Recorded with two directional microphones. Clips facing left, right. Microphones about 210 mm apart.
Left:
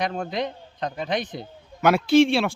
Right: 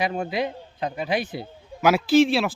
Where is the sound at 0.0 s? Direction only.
5° right (ahead or behind).